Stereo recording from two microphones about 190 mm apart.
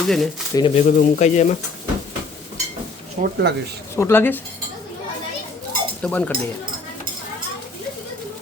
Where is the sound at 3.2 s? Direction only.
45° right (ahead or behind).